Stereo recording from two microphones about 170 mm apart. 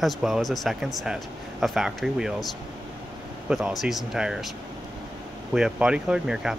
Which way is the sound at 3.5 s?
5° right (ahead or behind).